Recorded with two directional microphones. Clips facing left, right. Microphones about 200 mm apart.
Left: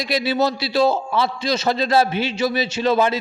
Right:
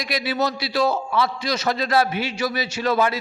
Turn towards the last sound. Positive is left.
turn(degrees=25)  # may be behind; listen again after turning